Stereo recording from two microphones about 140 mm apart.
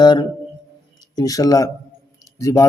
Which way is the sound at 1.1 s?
25° left (ahead or behind).